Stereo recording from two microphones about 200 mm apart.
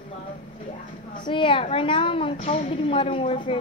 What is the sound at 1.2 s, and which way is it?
A woman's voice, 25° left (ahead or behind).